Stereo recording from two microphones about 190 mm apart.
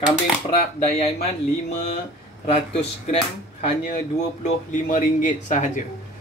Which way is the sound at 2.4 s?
40° left (ahead or behind).